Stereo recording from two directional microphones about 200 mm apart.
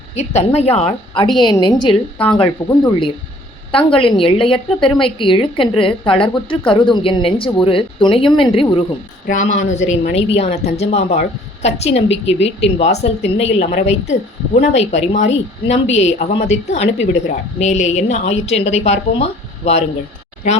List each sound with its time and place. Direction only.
0.2 s a woman's voice: 35° left (ahead or behind)
2.2 s speech: 5° left (ahead or behind)
3.7 s a woman's voice: 25° left (ahead or behind)
9.2 s a woman's voice: 40° left (ahead or behind)